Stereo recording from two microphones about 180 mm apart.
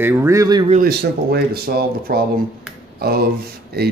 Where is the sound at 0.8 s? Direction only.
60° right (ahead or behind).